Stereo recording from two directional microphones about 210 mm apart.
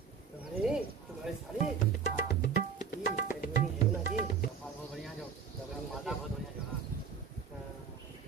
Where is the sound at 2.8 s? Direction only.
40° left (ahead or behind).